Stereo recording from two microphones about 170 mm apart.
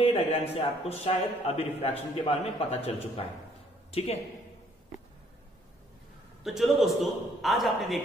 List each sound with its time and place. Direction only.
0.0 s a man's voice: 35° left (ahead or behind)
6.4 s a man's voice: centre (ahead or behind)